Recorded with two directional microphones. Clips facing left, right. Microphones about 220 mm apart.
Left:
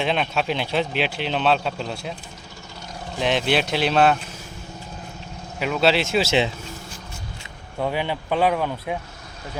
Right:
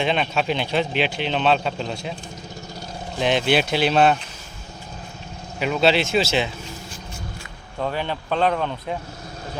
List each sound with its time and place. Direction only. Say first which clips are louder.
0.0 s a man's voice: right 1 dB; centre (ahead or behind)
3.2 s a man's voice: right 2 dB; centre (ahead or behind)
5.5 s a man's voice: right 1 dB; centre (ahead or behind)
6.2 s speech: left 2 dB; 25° left (ahead or behind)
7.8 s speech: left 1 dB; 10° left (ahead or behind)